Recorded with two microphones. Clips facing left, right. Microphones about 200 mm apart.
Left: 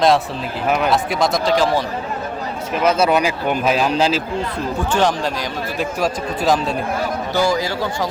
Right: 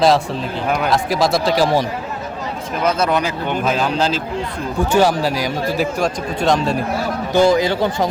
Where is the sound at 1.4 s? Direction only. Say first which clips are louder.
Even; 10° right (ahead or behind).